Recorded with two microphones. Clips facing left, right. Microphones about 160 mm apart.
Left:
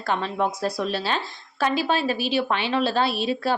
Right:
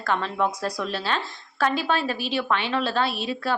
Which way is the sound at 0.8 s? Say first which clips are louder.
Left 2 dB; 15° left (ahead or behind).